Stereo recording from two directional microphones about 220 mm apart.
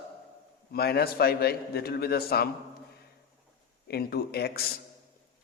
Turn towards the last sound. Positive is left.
turn(degrees=45)  # may be behind; listen again after turning